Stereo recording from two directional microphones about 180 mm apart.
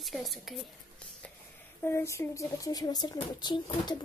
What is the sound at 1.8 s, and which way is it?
Speech, 15° left (ahead or behind).